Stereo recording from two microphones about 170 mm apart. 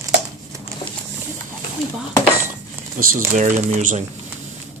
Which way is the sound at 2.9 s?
50° right (ahead or behind).